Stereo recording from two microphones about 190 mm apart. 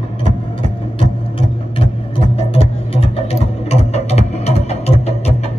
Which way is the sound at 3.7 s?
35° left (ahead or behind).